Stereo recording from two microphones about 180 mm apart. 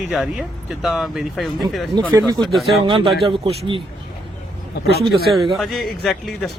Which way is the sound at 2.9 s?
30° right (ahead or behind).